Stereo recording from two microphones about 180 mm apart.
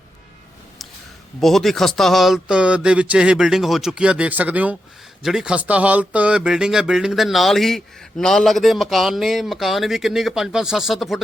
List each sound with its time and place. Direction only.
1.4 s speech: centre (ahead or behind)